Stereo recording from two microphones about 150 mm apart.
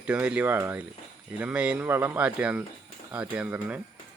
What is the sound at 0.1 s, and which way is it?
Speech, 10° right (ahead or behind).